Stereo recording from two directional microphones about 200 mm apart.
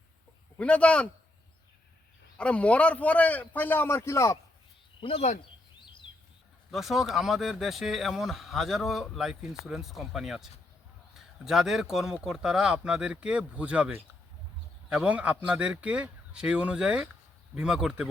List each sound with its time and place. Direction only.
0.5 s speech: 5° left (ahead or behind)
2.4 s a man's voice: 5° left (ahead or behind)
4.9 s speech: 25° left (ahead or behind)
5.8 s chirp: 25° left (ahead or behind)
6.7 s speech: centre (ahead or behind)